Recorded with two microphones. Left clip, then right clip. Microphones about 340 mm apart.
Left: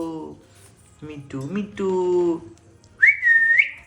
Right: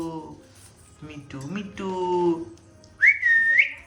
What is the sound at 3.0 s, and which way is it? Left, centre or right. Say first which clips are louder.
Whistling: left 3 dB; centre.